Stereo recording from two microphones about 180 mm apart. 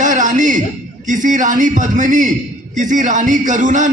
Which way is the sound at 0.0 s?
45° right (ahead or behind).